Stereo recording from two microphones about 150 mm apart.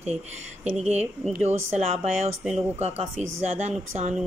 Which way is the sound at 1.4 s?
45° right (ahead or behind).